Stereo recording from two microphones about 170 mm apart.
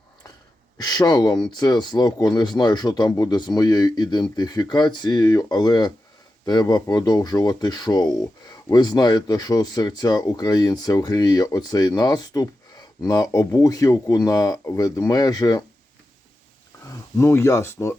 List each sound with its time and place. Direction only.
0.8 s speech: 20° left (ahead or behind)
16.8 s speech: 20° left (ahead or behind)